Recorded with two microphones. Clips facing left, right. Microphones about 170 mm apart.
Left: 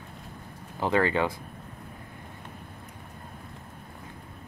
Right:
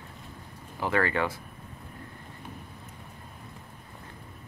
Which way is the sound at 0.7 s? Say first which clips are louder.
Left 2 dB; 20° left (ahead or behind).